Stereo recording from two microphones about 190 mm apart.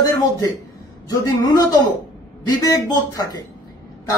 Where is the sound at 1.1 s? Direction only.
20° left (ahead or behind).